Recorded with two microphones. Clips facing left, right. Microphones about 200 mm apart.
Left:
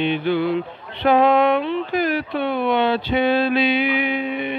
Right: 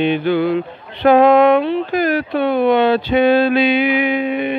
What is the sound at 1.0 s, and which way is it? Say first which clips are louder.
Speech: right 5 dB; 45° right (ahead or behind).